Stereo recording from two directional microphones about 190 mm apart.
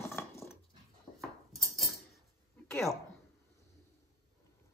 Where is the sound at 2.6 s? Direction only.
15° left (ahead or behind).